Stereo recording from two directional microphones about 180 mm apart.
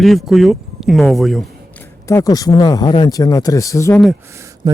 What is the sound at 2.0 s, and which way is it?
Speech, 20° left (ahead or behind).